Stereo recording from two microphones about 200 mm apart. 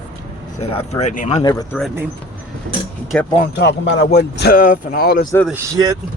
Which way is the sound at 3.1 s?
5° left (ahead or behind).